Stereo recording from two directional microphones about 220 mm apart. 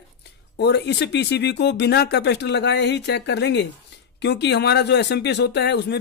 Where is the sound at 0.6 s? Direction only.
50° left (ahead or behind).